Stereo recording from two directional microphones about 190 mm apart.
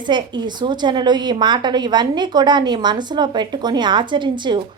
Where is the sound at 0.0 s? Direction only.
25° right (ahead or behind).